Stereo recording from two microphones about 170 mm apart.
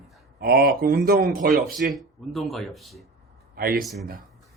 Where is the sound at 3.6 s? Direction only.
60° right (ahead or behind).